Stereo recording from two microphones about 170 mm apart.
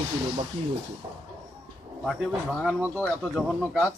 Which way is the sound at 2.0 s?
Centre (ahead or behind).